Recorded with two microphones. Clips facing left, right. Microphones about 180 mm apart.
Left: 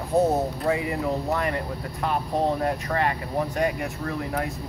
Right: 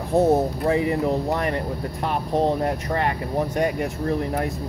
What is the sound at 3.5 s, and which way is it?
Speech, 30° right (ahead or behind).